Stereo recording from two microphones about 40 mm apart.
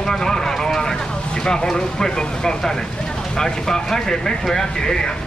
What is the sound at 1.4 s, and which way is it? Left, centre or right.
Speech, centre.